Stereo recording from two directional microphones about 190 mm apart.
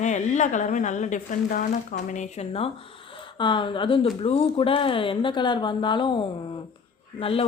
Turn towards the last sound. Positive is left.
turn(degrees=30)  # may be behind; listen again after turning